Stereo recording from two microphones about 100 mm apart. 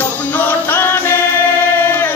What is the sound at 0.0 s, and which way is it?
Music, 20° left (ahead or behind).